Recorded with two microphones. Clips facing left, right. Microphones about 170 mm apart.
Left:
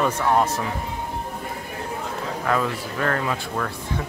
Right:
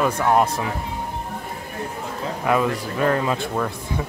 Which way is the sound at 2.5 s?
15° right (ahead or behind).